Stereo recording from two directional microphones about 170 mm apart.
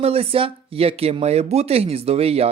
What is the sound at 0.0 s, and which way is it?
Speech, 35° right (ahead or behind).